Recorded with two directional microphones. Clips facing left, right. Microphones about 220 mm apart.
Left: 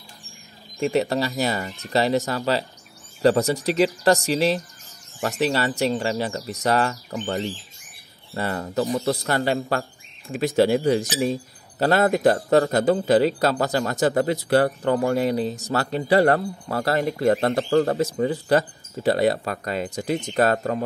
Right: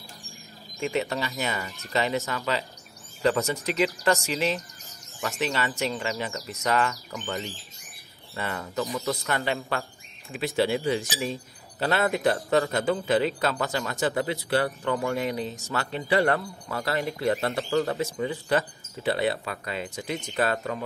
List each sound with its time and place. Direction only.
0.7 s speech: 40° left (ahead or behind)